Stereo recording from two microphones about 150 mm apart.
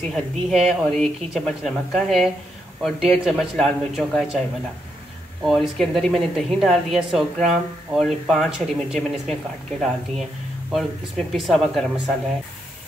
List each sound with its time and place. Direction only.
0.0 s speech: centre (ahead or behind)
5.4 s speech: centre (ahead or behind)